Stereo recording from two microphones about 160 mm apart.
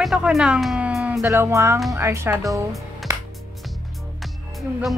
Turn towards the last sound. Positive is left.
turn(degrees=0)  # may be behind; listen again after turning